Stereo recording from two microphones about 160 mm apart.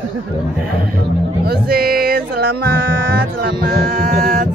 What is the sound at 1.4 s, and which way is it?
Music, 75° right (ahead or behind).